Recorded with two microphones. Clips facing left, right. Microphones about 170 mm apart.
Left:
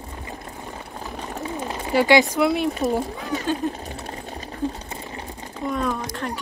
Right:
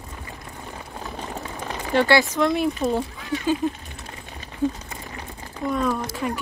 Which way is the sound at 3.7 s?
35° left (ahead or behind).